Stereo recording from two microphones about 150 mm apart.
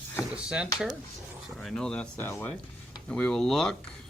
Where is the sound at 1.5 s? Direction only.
5° left (ahead or behind).